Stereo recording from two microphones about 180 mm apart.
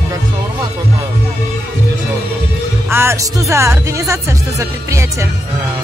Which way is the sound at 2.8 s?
15° right (ahead or behind).